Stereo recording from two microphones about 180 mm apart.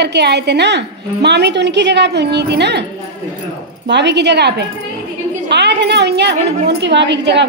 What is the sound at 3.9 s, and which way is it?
Speech, 75° right (ahead or behind).